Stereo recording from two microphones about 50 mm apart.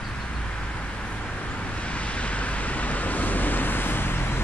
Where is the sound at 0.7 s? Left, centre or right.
Centre.